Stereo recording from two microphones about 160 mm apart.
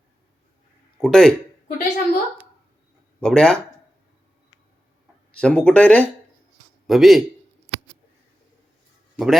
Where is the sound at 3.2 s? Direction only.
5° left (ahead or behind).